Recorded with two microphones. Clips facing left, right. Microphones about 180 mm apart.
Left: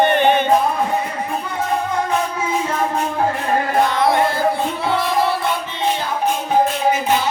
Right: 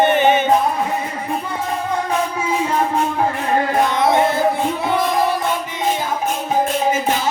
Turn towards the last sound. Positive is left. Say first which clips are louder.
# right 1 dB
turn(degrees=-15)  # may be behind; listen again after turning